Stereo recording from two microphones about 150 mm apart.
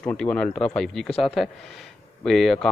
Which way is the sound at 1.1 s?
40° left (ahead or behind).